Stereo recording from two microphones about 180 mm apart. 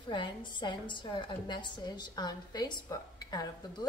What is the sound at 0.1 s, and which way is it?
A woman's voice, 25° left (ahead or behind).